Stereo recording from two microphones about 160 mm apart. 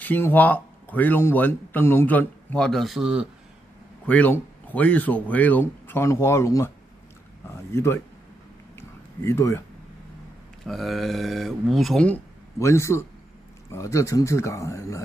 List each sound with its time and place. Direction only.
0.0 s speech: 10° left (ahead or behind); by 3.3 s 5° right (ahead or behind)
4.0 s speech: 10° left (ahead or behind)
8.7 s a sound: 15° left (ahead or behind)
10.6 s speech: centre (ahead or behind)
12.5 s speech: 15° left (ahead or behind)